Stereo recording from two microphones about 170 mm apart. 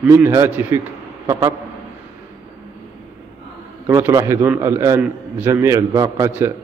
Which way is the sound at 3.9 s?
15° right (ahead or behind).